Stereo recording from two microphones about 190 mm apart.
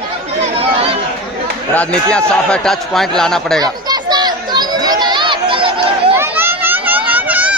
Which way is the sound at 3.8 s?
20° right (ahead or behind).